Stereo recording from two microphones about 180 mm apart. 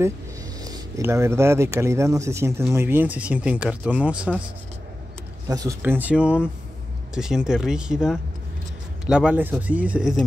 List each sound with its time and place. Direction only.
0.7 s speech: 20° right (ahead or behind)
5.5 s speech: 20° right (ahead or behind)
5.8 s speech: 10° right (ahead or behind)